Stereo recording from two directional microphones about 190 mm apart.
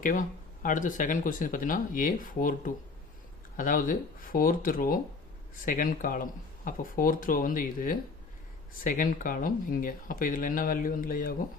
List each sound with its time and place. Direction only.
0.0 s speech: 45° left (ahead or behind)